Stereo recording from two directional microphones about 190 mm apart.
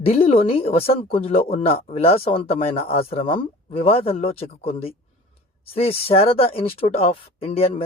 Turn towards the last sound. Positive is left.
turn(degrees=30)  # may be behind; listen again after turning